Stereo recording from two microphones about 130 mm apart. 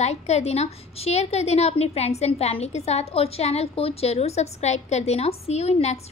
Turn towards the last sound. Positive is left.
turn(degrees=55)  # may be behind; listen again after turning